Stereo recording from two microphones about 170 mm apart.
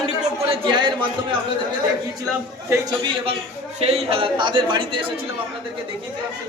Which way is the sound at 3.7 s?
35° right (ahead or behind).